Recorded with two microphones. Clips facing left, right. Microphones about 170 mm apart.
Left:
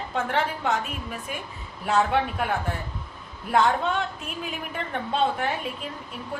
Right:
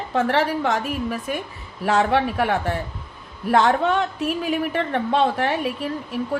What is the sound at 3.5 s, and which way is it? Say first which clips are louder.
A woman's voice: right 4 dB; 75° right (ahead or behind).